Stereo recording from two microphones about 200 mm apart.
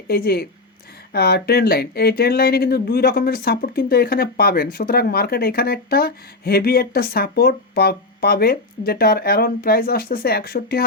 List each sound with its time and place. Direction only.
0.1 s speech: 50° left (ahead or behind)